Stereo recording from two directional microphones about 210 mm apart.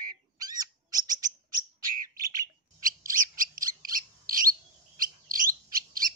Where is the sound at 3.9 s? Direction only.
40° right (ahead or behind).